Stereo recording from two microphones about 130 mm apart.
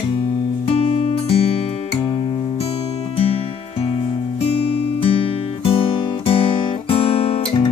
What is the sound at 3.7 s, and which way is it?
Music, 45° left (ahead or behind).